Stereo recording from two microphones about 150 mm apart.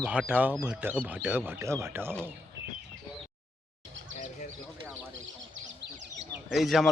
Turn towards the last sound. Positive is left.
turn(degrees=0)  # may be behind; listen again after turning